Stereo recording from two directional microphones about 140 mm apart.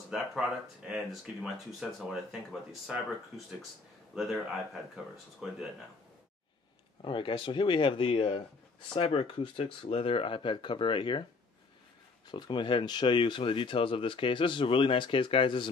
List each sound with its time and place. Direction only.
0.1 s speech: 5° right (ahead or behind)
4.1 s speech: centre (ahead or behind)
7.0 s speech: 35° left (ahead or behind)
12.3 s speech: 35° left (ahead or behind)